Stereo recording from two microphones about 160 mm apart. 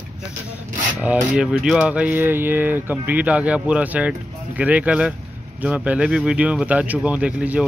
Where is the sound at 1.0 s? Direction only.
5° right (ahead or behind).